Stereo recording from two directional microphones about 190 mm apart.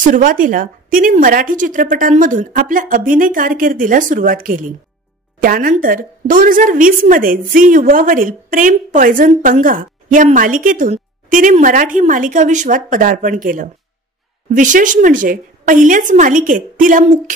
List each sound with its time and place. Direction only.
0.0 s a woman's voice: 45° right (ahead or behind)